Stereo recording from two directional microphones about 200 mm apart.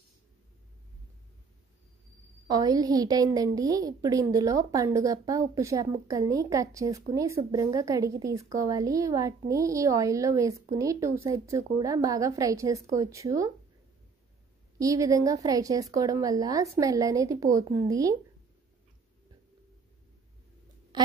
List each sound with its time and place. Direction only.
2.4 s a woman's voice: 20° right (ahead or behind)
14.8 s a woman's voice: 15° right (ahead or behind)
20.9 s a sound: 20° right (ahead or behind)